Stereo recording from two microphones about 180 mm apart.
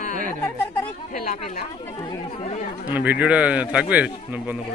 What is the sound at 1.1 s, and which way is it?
Chatter, 50° left (ahead or behind).